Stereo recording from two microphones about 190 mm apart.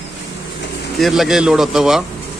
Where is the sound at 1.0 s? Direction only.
Centre (ahead or behind).